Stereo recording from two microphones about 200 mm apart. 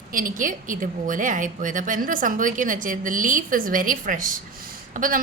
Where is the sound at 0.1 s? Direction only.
45° right (ahead or behind).